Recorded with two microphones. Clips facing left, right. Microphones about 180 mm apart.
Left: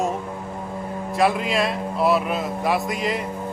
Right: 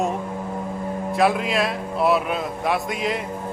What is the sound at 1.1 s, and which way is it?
A man's voice, centre (ahead or behind).